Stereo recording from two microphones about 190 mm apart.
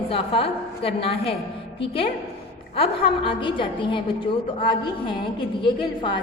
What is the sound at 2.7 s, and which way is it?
A woman's voice, 30° left (ahead or behind).